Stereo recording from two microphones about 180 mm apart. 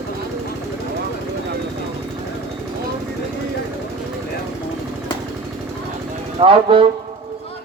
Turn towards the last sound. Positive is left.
turn(degrees=-30)  # may be behind; listen again after turning